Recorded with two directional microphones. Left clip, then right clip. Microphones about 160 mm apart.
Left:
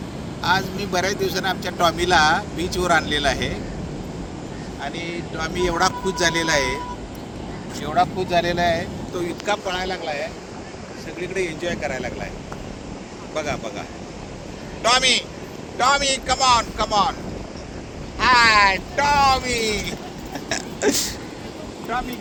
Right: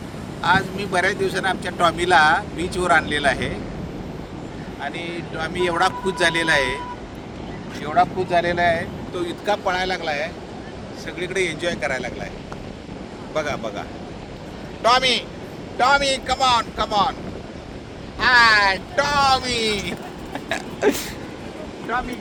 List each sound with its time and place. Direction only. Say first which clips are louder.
0.4 s speech: right 2 dB; 10° right (ahead or behind)
4.8 s speech: even; 30° right (ahead or behind)
7.8 s speech: right 1 dB; centre (ahead or behind)
9.6 s speech: right 3 dB; 20° right (ahead or behind)
13.3 s speech: right 2 dB; 25° right (ahead or behind)
14.8 s a man's voice: even; 40° right (ahead or behind)
15.8 s speech: right 1 dB; 60° right (ahead or behind)
18.2 s speech: even; 75° right (ahead or behind)
20.3 s a sound: right 1 dB; 15° right (ahead or behind)